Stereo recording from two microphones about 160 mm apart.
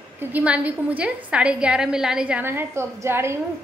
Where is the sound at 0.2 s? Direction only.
10° right (ahead or behind).